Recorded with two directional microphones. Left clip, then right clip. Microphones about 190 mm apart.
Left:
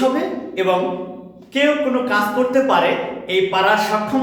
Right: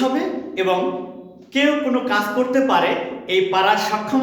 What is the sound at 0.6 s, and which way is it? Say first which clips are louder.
A man's voice: left 2 dB; 20° right (ahead or behind).